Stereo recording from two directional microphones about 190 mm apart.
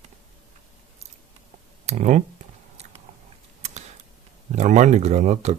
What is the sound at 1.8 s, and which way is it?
Computer keyboard, 40° right (ahead or behind).